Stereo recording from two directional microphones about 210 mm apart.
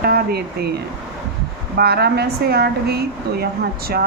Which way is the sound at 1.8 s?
50° right (ahead or behind).